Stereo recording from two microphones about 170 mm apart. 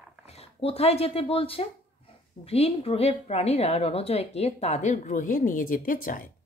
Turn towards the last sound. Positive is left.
turn(degrees=55)  # may be behind; listen again after turning